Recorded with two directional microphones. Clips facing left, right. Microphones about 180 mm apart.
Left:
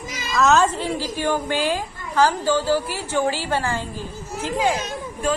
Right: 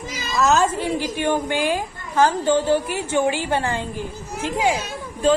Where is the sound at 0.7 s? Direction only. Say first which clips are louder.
Right 2 dB; 15° right (ahead or behind).